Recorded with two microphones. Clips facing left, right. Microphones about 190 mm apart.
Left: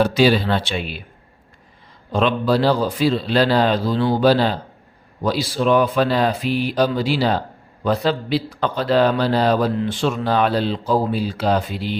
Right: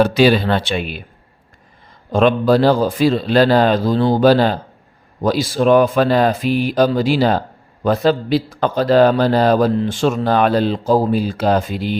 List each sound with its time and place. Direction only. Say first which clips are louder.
0.0 s speech: right 3 dB; 60° right (ahead or behind)
2.1 s a man's voice: right 5 dB; 50° right (ahead or behind)